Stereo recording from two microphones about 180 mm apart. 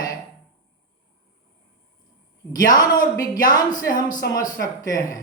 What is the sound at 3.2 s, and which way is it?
A man's voice, 20° left (ahead or behind).